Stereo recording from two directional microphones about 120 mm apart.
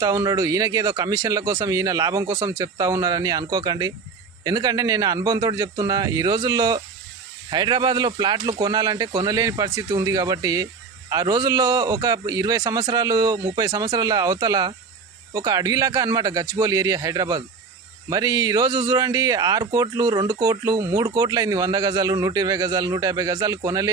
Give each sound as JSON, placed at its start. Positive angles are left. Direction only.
{"t": 0.0, "sound": "a man's voice", "side_deg": -25}